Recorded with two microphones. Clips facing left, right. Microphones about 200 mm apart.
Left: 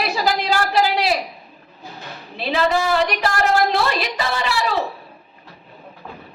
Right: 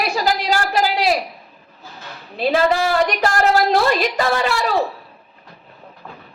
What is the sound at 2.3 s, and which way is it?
A woman's voice, 45° right (ahead or behind).